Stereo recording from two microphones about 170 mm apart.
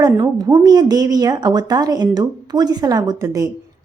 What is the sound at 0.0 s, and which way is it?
A woman's voice, 25° right (ahead or behind).